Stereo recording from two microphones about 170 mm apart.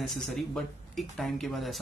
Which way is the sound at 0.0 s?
Centre (ahead or behind).